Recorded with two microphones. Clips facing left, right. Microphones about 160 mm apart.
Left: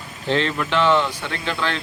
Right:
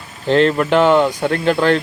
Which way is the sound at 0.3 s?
45° right (ahead or behind).